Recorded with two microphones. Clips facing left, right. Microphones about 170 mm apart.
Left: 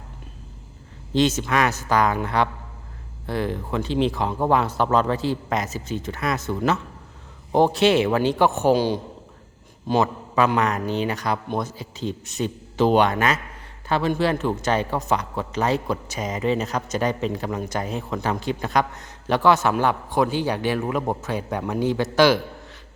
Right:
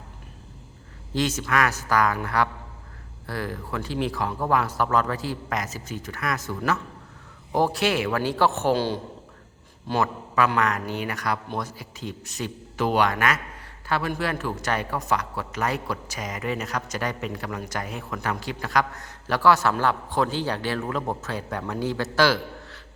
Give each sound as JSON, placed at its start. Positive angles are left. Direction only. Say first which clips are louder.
{"t": 1.1, "sound": "speech", "louder": "left 4 dB", "side_deg": 25}